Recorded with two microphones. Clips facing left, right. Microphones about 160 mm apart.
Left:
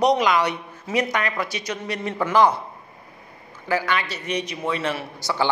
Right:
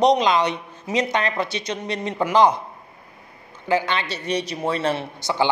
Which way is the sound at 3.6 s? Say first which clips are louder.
Right 2 dB; 20° right (ahead or behind).